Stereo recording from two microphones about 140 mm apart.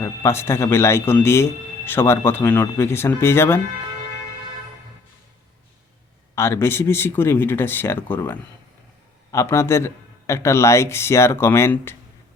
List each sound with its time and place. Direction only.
0.0 s speech: 20° left (ahead or behind)
6.3 s a man's voice: 20° left (ahead or behind)